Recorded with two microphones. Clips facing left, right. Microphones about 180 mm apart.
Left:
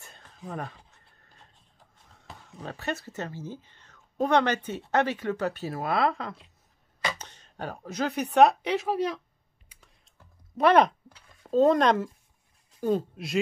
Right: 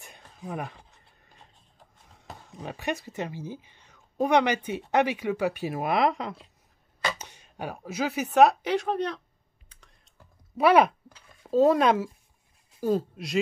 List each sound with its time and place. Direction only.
0.0 s a sound: 15° right (ahead or behind)
2.5 s a woman's voice: 15° right (ahead or behind); by 9.2 s 5° left (ahead or behind)
9.7 s typing: 5° left (ahead or behind)
10.6 s a woman's voice: 5° right (ahead or behind)